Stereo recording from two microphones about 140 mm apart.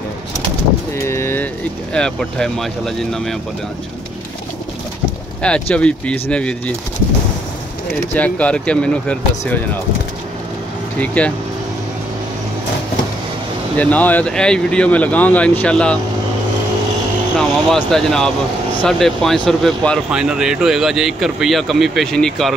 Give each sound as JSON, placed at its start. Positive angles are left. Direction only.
{"t": 0.9, "sound": "a sound", "side_deg": 20}
{"t": 2.0, "sound": "speech", "side_deg": 5}
{"t": 5.4, "sound": "speech", "side_deg": 5}
{"t": 8.1, "sound": "speech", "side_deg": 10}
{"t": 11.0, "sound": "speech", "side_deg": 10}
{"t": 13.7, "sound": "speech", "side_deg": 10}
{"t": 17.4, "sound": "speech", "side_deg": 5}